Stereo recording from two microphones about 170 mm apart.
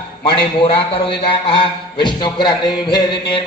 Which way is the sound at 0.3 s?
30° left (ahead or behind).